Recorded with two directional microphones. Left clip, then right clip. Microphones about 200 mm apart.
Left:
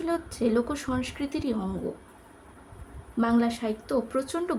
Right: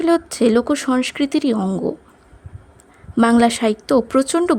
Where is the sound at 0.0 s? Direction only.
45° right (ahead or behind).